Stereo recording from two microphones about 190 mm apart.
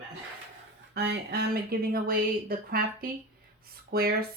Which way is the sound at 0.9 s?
55° right (ahead or behind).